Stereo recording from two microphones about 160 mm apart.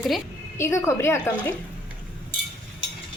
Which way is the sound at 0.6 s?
15° left (ahead or behind).